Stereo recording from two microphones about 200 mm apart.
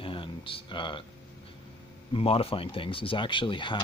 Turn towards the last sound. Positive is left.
turn(degrees=25)  # may be behind; listen again after turning